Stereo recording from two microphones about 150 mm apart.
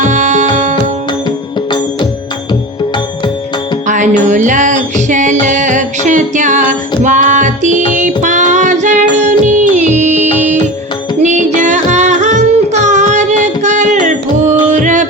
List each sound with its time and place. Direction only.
0.1 s music: 55° right (ahead or behind)
3.8 s music: 55° right (ahead or behind)